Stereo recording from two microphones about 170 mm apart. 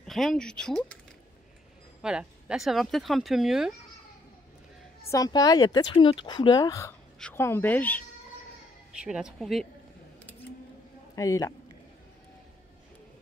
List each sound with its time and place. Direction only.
0.0 s speech: centre (ahead or behind)
2.0 s speech: 5° right (ahead or behind)
5.1 s a woman's voice: 20° left (ahead or behind)
8.9 s speech: 5° right (ahead or behind)
11.1 s speech: 20° left (ahead or behind)